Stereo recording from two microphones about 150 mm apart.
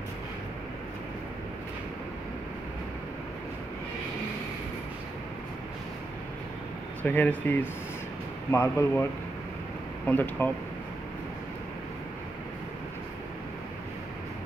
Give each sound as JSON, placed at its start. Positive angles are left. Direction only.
{"t": 7.0, "sound": "speech", "side_deg": 10}
{"t": 10.0, "sound": "speech", "side_deg": 10}